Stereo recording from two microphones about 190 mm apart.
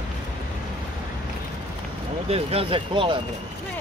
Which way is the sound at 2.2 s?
30° right (ahead or behind).